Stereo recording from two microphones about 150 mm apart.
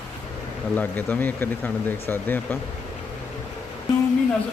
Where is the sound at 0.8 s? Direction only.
10° left (ahead or behind).